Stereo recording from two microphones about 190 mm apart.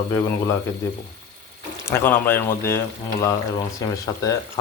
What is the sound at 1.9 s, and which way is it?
Speech, 10° left (ahead or behind).